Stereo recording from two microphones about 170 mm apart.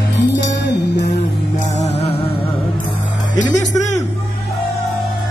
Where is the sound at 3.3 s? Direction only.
45° left (ahead or behind).